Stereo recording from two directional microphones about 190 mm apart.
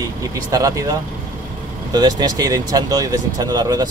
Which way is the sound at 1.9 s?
20° right (ahead or behind).